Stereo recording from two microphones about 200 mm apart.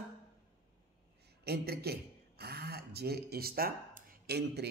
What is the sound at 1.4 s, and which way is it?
Speech, 55° right (ahead or behind).